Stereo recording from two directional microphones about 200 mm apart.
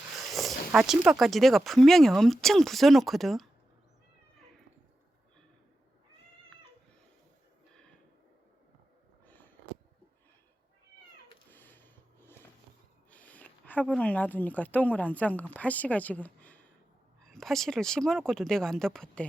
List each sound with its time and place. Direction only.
0.3 s speech: centre (ahead or behind)
11.5 s a sound: 10° left (ahead or behind)
13.8 s speech: 5° left (ahead or behind)